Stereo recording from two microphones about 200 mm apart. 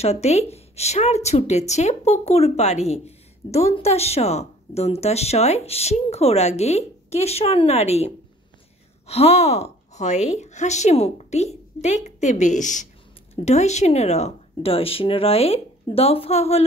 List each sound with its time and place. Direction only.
0.0 s speech: 35° left (ahead or behind)